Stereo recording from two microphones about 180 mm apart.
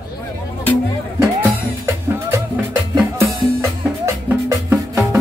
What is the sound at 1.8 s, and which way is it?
Music, 15° right (ahead or behind).